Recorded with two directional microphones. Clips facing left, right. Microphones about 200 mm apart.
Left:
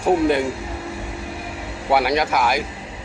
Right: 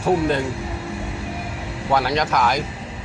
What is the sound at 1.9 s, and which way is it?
Speech, 10° left (ahead or behind).